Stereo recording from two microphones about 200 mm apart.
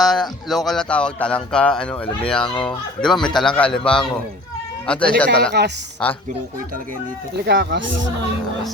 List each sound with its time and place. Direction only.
0.0 s speech: centre (ahead or behind)
5.6 s speech: 55° right (ahead or behind)
6.0 s speech: 5° left (ahead or behind)
7.3 s speech: 60° right (ahead or behind)